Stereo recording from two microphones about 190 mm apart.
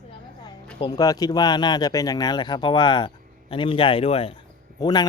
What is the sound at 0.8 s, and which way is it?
Speech, 20° left (ahead or behind).